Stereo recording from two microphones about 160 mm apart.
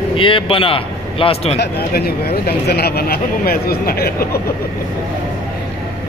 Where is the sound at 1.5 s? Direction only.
75° left (ahead or behind).